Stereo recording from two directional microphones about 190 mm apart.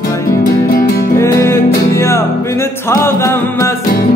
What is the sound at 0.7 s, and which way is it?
Music, 50° left (ahead or behind).